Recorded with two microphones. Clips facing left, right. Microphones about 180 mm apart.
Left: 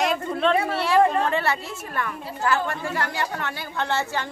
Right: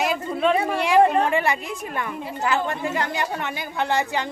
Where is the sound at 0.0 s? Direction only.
5° right (ahead or behind).